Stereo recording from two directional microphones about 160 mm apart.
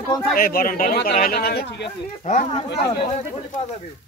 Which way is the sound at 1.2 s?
80° left.